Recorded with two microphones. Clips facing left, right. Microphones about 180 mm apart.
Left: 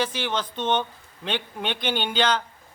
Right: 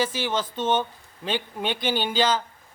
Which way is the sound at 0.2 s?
5° right (ahead or behind).